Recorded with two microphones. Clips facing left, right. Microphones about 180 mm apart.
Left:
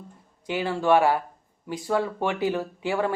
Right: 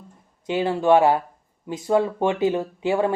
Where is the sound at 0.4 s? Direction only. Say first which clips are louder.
Right 4 dB; 20° right (ahead or behind).